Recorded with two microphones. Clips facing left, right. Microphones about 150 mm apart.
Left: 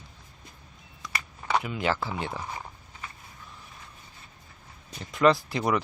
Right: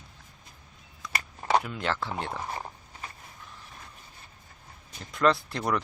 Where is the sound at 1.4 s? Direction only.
40° right (ahead or behind).